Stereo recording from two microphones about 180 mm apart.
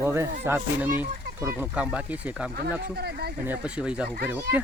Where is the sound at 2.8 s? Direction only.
60° right (ahead or behind).